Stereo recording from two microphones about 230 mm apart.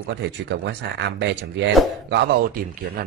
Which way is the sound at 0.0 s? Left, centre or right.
Right.